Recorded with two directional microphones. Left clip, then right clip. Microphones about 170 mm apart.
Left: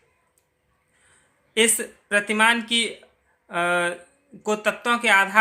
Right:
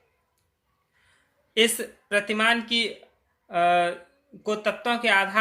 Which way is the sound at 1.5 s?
25° left (ahead or behind).